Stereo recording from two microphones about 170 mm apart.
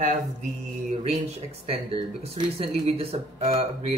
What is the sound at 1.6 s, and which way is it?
Speech, 35° right (ahead or behind).